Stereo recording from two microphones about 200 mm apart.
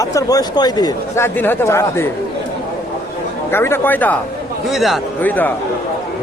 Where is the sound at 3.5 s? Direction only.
10° left (ahead or behind).